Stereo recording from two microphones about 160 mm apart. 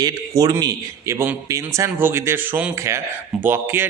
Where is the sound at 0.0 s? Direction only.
25° right (ahead or behind).